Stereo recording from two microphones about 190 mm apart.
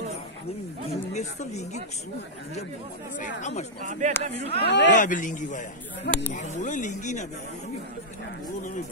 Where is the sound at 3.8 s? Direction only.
40° right (ahead or behind).